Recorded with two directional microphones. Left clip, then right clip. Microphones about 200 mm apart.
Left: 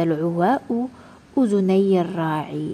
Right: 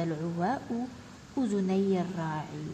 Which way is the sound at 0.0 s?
45° left (ahead or behind).